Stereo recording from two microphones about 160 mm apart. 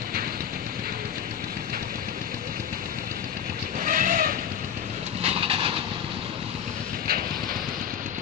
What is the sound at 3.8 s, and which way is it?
Vehicle, 55° right (ahead or behind).